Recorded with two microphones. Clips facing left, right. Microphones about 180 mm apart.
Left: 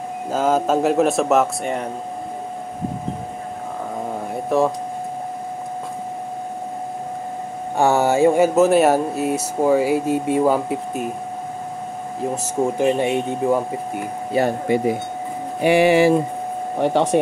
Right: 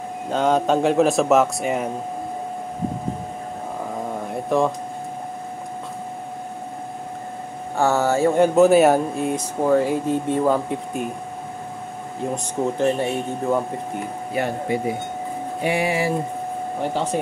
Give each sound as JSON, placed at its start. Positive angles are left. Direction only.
{"t": 0.3, "sound": "speech", "side_deg": 5}
{"t": 4.3, "sound": "a sound", "side_deg": 0}
{"t": 7.7, "sound": "speech", "side_deg": 15}
{"t": 8.5, "sound": "speech", "side_deg": 0}
{"t": 12.2, "sound": "speech", "side_deg": 10}
{"t": 15.6, "sound": "speech", "side_deg": 75}
{"t": 16.8, "sound": "speech", "side_deg": 70}